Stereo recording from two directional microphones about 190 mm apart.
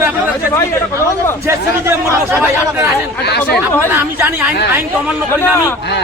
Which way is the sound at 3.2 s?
60° left (ahead or behind).